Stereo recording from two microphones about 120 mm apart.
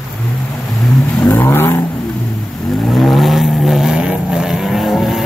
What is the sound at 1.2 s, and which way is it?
Vehicle, 20° left (ahead or behind).